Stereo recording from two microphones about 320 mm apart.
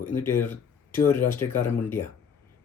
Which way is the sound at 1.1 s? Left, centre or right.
Left.